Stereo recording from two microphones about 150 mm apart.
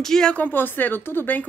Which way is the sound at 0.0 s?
5° left (ahead or behind).